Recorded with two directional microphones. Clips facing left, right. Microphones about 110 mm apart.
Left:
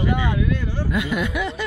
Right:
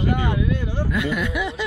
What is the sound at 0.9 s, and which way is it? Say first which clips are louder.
Speech: left 1 dB; 10° left (ahead or behind).